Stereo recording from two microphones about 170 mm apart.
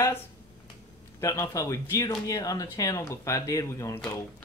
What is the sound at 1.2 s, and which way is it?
Speech, 20° left (ahead or behind).